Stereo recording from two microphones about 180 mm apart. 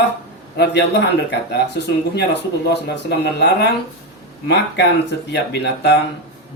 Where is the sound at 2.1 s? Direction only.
70° left (ahead or behind).